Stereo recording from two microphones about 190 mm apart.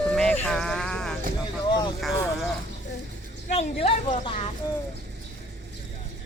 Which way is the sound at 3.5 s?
30° left (ahead or behind).